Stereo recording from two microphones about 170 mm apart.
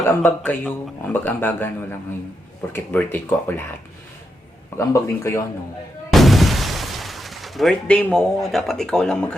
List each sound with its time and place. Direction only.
0.0 s speech: 15° left (ahead or behind)
4.8 s speech: 15° left (ahead or behind)
6.1 s shatter: centre (ahead or behind)